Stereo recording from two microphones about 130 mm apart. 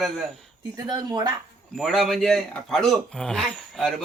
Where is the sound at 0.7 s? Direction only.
30° right (ahead or behind).